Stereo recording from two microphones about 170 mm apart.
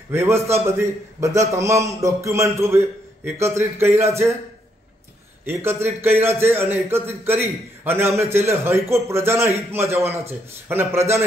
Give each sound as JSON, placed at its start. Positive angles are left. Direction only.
{"t": 0.1, "sound": "a man's voice", "side_deg": -15}
{"t": 5.4, "sound": "a man's voice", "side_deg": -15}